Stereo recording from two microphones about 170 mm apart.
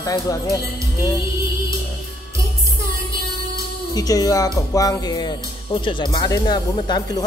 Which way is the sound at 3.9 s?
20° left (ahead or behind).